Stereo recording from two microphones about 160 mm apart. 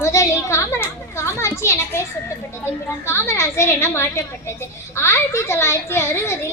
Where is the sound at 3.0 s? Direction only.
15° left (ahead or behind).